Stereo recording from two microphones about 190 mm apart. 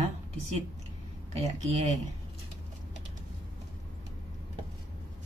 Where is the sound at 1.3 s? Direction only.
35° right (ahead or behind).